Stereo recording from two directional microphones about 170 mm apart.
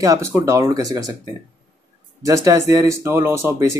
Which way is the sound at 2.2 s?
20° right (ahead or behind).